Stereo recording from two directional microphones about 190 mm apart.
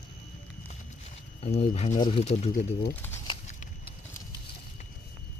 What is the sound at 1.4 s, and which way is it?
Speech, 35° left (ahead or behind).